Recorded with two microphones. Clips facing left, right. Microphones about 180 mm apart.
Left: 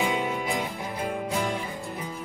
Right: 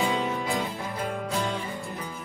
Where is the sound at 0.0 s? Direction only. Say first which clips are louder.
Even; 15° left (ahead or behind).